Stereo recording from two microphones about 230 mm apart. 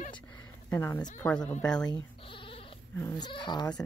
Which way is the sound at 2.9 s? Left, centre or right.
Centre.